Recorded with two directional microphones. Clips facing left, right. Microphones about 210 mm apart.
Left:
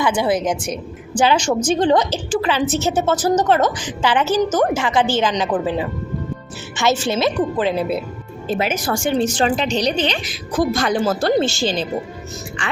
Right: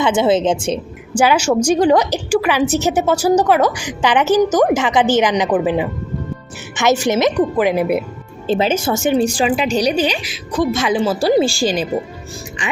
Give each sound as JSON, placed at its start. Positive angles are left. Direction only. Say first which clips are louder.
{"t": 0.0, "sound": "a woman's voice", "louder": "right 4 dB", "side_deg": -25}
{"t": 1.1, "sound": "a woman's voice", "louder": "right 3 dB", "side_deg": -10}
{"t": 7.0, "sound": "a woman's voice", "louder": "right 4 dB", "side_deg": -15}
{"t": 8.4, "sound": "a woman's voice", "louder": "right 4 dB", "side_deg": -30}
{"t": 9.1, "sound": "a woman's voice", "louder": "even", "side_deg": -10}